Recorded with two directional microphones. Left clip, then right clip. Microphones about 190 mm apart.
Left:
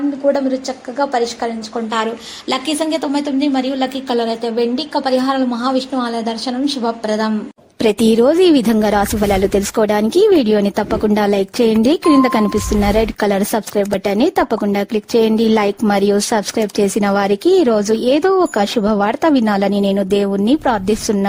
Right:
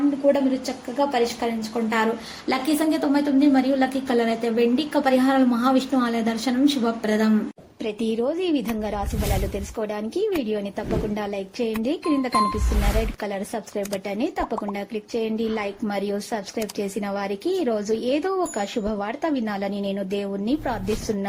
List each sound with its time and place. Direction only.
0.2 s a woman's voice: 10° left (ahead or behind)
2.5 s a woman's voice: 15° left (ahead or behind); by 7.3 s centre (ahead or behind)
7.8 s a woman's voice: 70° left (ahead or behind)